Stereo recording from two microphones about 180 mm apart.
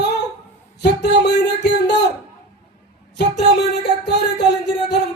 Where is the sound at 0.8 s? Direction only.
70° left (ahead or behind).